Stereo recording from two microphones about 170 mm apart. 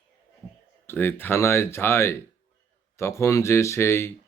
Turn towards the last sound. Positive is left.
turn(degrees=15)  # may be behind; listen again after turning